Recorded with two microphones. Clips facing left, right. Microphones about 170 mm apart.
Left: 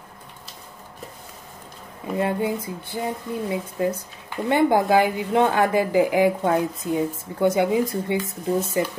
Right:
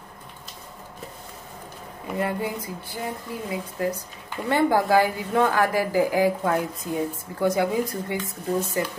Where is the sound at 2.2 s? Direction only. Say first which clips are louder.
Left 4 dB; 25° left (ahead or behind).